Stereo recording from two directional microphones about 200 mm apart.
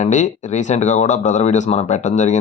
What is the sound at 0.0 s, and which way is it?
Speech, 40° left (ahead or behind).